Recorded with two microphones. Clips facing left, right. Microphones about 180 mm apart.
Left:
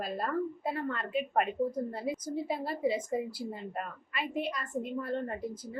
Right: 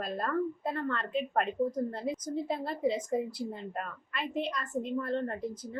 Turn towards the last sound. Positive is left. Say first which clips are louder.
# right 2 dB
turn(degrees=5)  # may be behind; listen again after turning